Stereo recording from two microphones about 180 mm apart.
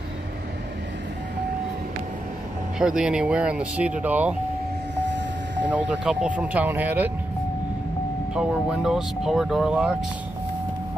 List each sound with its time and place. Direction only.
2.8 s speech: 5° right (ahead or behind)
5.0 s vehicle: 75° right (ahead or behind)
5.7 s speech: 5° right (ahead or behind)
8.4 s speech: 5° right (ahead or behind)